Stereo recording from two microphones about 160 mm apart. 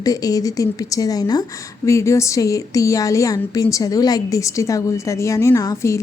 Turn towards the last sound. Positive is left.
turn(degrees=20)  # may be behind; listen again after turning